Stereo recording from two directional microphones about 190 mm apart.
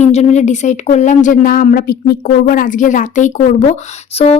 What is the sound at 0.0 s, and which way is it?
A woman's voice, 35° left (ahead or behind).